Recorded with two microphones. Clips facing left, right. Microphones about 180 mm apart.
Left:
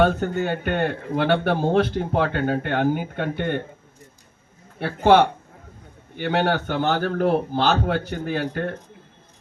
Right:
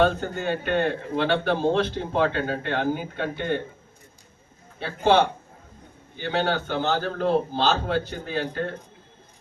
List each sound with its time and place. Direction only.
0.3 s a man's voice: 55° left (ahead or behind)
4.8 s a man's voice: 60° left (ahead or behind)